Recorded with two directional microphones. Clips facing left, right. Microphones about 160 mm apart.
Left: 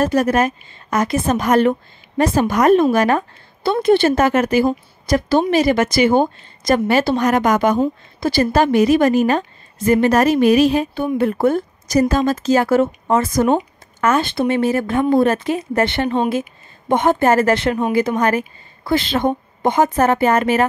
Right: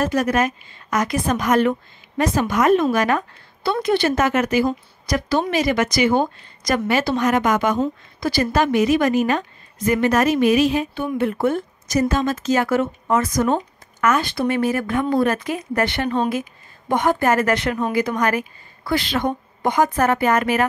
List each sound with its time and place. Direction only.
0.0 s a woman's voice: 30° left (ahead or behind)